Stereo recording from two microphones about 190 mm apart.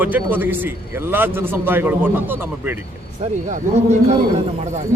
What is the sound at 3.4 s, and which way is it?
Speech, 35° right (ahead or behind).